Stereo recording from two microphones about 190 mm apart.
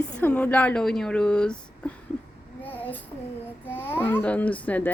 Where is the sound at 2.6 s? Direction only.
10° left (ahead or behind).